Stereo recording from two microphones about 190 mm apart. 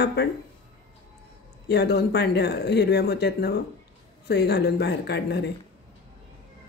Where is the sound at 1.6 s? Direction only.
60° left (ahead or behind).